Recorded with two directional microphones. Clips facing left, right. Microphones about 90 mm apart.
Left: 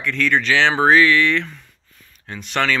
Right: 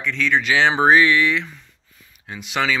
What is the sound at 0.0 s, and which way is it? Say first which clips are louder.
Speech: left 1 dB; centre (ahead or behind).